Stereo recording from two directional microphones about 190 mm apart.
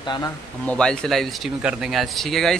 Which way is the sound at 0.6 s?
5° left (ahead or behind).